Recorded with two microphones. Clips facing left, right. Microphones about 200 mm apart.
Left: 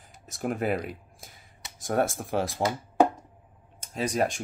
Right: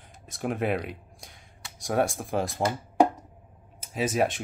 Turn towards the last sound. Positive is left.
turn(degrees=-5)  # may be behind; listen again after turning